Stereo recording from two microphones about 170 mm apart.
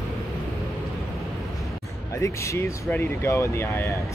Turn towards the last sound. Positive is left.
turn(degrees=15)  # may be behind; listen again after turning